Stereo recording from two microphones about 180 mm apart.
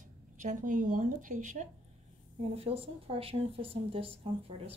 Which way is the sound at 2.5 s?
35° right (ahead or behind).